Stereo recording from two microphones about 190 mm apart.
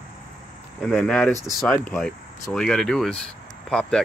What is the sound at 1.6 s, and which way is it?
Speech, 10° left (ahead or behind).